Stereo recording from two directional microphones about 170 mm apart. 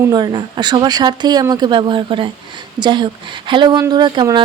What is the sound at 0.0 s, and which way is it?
Speech, 25° right (ahead or behind).